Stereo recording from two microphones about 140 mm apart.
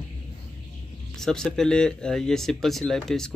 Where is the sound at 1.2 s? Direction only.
5° left (ahead or behind).